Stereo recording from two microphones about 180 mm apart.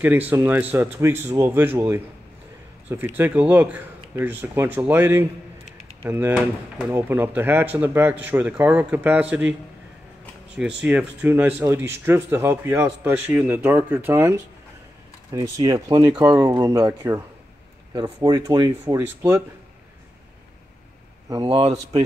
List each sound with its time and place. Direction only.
0.0 s speech: 10° right (ahead or behind)
3.2 s speech: 10° right (ahead or behind)
10.8 s speech: 5° right (ahead or behind)
15.3 s speech: 20° right (ahead or behind)
21.3 s speech: 25° right (ahead or behind)